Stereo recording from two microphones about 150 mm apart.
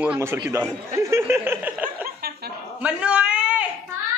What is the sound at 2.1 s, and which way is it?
Chuckle, 90° right.